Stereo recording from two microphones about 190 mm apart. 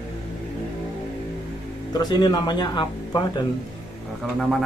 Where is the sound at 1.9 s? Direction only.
20° left (ahead or behind).